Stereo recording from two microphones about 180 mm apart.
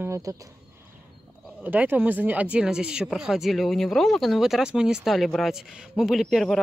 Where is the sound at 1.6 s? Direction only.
10° right (ahead or behind).